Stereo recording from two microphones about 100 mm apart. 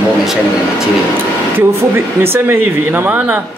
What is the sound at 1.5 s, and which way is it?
Speech, 25° right (ahead or behind).